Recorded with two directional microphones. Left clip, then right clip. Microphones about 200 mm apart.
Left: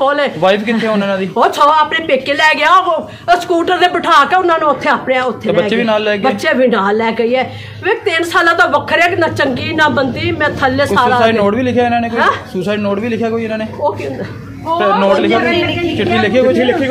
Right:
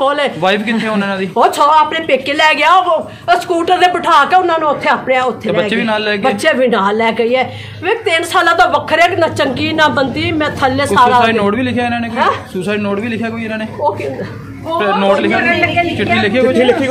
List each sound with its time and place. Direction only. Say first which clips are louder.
0.0 s a woman's voice: left 1 dB; 5° right (ahead or behind)
0.4 s a man's voice: left 2 dB; 20° left (ahead or behind)
1.3 s a woman's voice: right 1 dB; centre (ahead or behind)
5.7 s a man's voice: left 2 dB; 25° left (ahead or behind)
6.2 s a woman's voice: even; 10° right (ahead or behind)
11.1 s a man's voice: even; 25° left (ahead or behind)
14.8 s a man's voice: left 1 dB; 25° left (ahead or behind)